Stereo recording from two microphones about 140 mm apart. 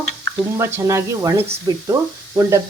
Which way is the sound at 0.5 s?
20° right (ahead or behind).